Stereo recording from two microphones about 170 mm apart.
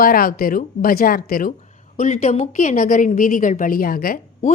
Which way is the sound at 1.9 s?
40° left (ahead or behind).